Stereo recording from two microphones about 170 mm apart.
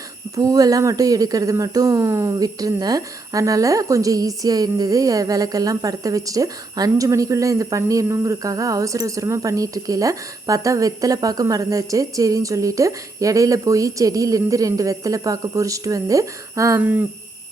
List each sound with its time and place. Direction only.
0.3 s a woman's voice: 20° right (ahead or behind)